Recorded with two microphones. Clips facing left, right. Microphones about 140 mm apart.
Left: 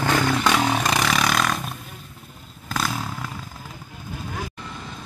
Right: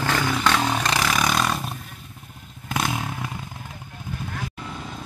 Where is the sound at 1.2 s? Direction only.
5° right (ahead or behind).